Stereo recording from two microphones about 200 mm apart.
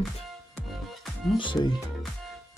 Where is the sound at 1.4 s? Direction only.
25° left (ahead or behind).